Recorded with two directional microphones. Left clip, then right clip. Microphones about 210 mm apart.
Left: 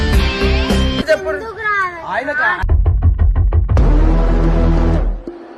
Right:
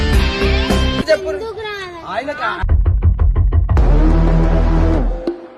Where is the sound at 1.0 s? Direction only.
65° right (ahead or behind).